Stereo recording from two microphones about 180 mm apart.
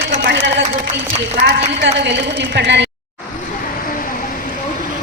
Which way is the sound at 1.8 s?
85° right.